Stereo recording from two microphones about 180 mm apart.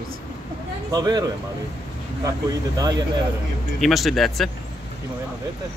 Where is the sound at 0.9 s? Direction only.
20° right (ahead or behind).